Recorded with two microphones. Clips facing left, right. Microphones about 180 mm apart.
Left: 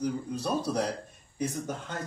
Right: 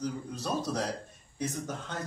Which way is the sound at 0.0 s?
10° left (ahead or behind).